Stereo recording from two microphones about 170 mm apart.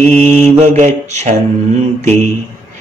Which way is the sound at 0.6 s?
45° right (ahead or behind).